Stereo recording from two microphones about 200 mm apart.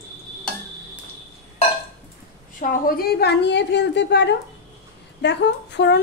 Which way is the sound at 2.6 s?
45° left (ahead or behind).